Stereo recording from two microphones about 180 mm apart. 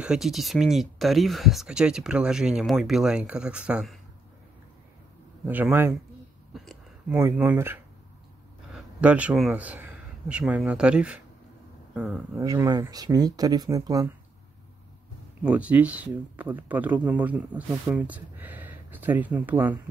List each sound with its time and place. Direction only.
0.0 s speech: 5° right (ahead or behind)
5.4 s speech: 10° right (ahead or behind)
6.5 s a sound: centre (ahead or behind)
7.2 s a man's voice: 10° right (ahead or behind)
12.4 s speech: 20° right (ahead or behind)
15.4 s speech: 5° right (ahead or behind)